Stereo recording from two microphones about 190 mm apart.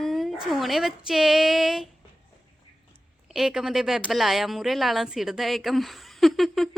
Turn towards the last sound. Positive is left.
turn(degrees=0)  # may be behind; listen again after turning